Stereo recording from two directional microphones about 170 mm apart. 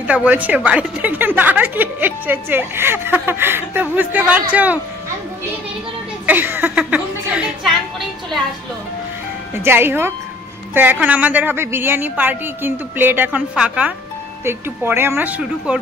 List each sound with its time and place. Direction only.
0.0 s a woman's voice: 10° right (ahead or behind)
6.2 s a sound: 10° right (ahead or behind)
9.6 s a woman's voice: 15° right (ahead or behind)